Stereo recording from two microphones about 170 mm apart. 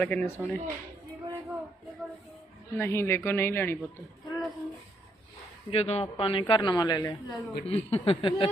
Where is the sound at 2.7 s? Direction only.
15° left (ahead or behind).